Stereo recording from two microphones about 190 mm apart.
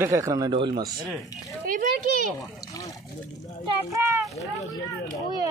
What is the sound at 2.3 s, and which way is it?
Splash, 20° left (ahead or behind).